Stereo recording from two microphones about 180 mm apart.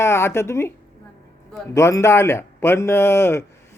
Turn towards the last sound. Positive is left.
turn(degrees=15)  # may be behind; listen again after turning